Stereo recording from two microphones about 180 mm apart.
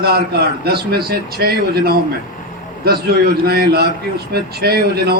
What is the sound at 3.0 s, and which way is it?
A man's voice, 60° right (ahead or behind).